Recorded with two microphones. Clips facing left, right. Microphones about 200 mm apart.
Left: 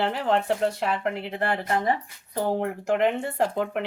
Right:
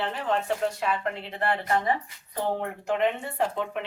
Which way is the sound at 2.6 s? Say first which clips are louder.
Left 3 dB; 75° left (ahead or behind).